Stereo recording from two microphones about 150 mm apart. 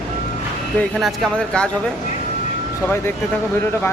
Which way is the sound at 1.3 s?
5° left (ahead or behind).